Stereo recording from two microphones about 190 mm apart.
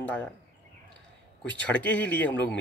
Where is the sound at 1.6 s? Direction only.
5° left (ahead or behind).